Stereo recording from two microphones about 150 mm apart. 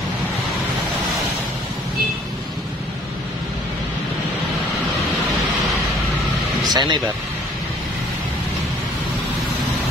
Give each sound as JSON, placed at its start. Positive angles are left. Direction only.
{"t": 6.7, "sound": "speech", "side_deg": -30}